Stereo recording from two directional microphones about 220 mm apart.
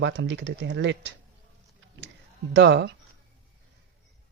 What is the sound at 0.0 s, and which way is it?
Speech, 55° right (ahead or behind).